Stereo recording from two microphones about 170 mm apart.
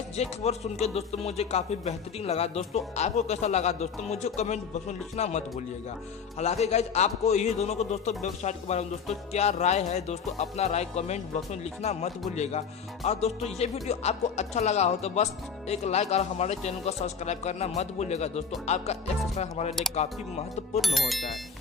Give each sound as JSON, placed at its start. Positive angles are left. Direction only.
{"t": 0.1, "sound": "speech", "side_deg": 40}
{"t": 6.4, "sound": "speech", "side_deg": 40}
{"t": 20.8, "sound": "speech", "side_deg": 0}